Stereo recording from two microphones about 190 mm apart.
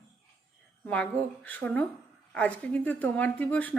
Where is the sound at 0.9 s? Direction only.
5° left (ahead or behind).